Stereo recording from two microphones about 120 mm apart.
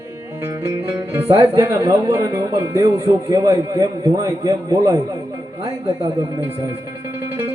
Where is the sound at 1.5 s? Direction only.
25° right (ahead or behind).